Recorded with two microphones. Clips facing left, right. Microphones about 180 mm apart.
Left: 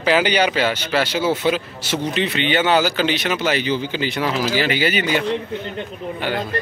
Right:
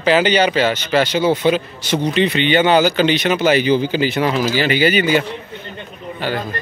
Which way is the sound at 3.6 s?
15° right (ahead or behind).